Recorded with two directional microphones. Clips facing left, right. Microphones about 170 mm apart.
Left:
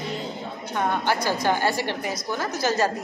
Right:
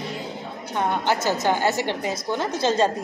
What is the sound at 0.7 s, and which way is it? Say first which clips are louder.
A woman's voice: right 1 dB; 20° right (ahead or behind).